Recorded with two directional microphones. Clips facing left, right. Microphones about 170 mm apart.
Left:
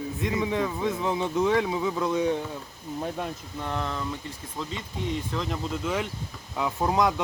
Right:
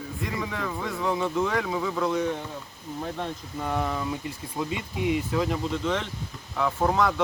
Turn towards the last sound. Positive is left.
turn(degrees=15)  # may be behind; listen again after turning